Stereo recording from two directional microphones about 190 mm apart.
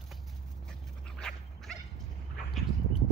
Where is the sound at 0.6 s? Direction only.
5° left (ahead or behind).